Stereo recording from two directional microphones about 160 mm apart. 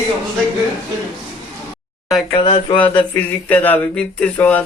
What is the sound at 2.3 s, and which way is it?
Speech, 35° left (ahead or behind).